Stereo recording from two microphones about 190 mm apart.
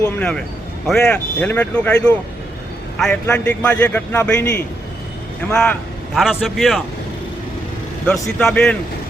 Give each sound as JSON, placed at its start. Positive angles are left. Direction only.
{"t": 0.2, "sound": "a man's voice", "side_deg": 5}
{"t": 8.0, "sound": "speech", "side_deg": 5}